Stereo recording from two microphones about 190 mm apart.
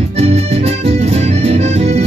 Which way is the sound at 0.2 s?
35° right (ahead or behind).